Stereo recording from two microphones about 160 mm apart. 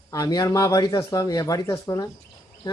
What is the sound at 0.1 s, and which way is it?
Speech, 20° left (ahead or behind).